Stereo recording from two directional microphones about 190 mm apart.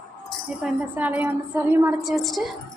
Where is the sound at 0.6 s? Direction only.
10° right (ahead or behind).